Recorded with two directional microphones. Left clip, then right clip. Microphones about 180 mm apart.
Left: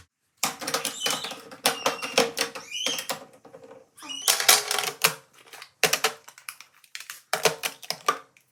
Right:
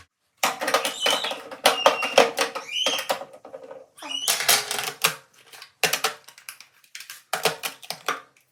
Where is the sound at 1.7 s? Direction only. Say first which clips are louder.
Right 8 dB; 40° right (ahead or behind).